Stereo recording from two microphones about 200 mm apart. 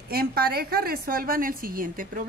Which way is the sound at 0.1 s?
50° right (ahead or behind).